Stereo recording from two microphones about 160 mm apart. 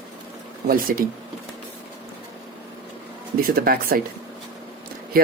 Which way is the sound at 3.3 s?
65° right (ahead or behind).